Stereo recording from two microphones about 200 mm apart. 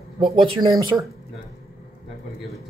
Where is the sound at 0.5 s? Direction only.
20° right (ahead or behind).